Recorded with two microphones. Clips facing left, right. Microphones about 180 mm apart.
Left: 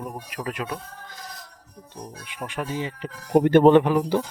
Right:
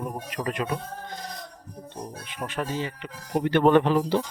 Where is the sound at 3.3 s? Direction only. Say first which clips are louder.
Left 7 dB; 50° left (ahead or behind).